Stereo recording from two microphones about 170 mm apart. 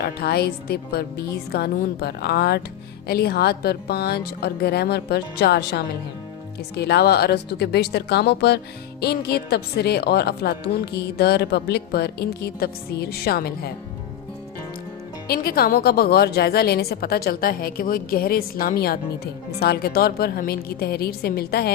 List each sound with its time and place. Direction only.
0.0 s a woman's voice: 70° left (ahead or behind)
15.3 s a woman's voice: 65° left (ahead or behind)